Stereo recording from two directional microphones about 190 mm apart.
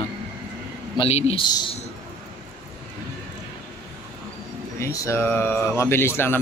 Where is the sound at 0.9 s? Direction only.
30° left (ahead or behind).